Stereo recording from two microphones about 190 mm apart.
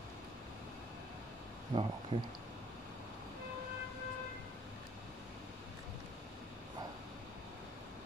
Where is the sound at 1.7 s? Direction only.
30° right (ahead or behind).